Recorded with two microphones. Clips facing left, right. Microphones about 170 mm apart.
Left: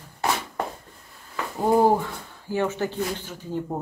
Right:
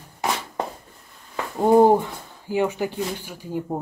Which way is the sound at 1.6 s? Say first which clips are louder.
Right 4 dB; 20° right (ahead or behind).